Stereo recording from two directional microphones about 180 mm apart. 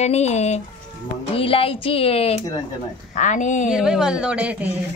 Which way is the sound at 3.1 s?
45° left (ahead or behind).